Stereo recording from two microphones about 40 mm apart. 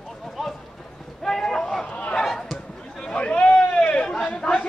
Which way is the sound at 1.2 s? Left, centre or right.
Centre.